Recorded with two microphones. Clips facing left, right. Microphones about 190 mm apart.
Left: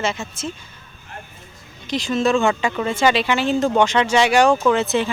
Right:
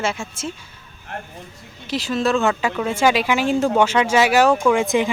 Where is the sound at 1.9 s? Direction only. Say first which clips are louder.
Left 1 dB; 5° right (ahead or behind).